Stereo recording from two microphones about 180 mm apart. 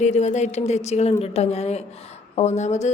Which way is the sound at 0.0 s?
40° left (ahead or behind).